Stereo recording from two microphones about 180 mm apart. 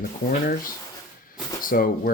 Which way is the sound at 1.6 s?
50° left (ahead or behind).